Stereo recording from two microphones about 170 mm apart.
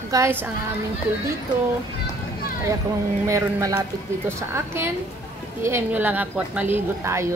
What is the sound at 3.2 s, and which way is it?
A woman's voice, 20° right (ahead or behind).